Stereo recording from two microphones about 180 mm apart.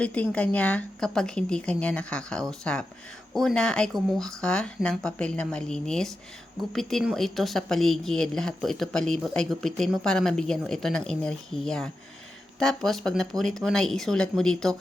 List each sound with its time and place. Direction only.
0.0 s a woman's voice: 5° left (ahead or behind)